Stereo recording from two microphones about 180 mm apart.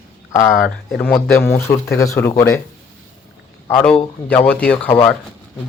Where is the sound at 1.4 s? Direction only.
15° left (ahead or behind).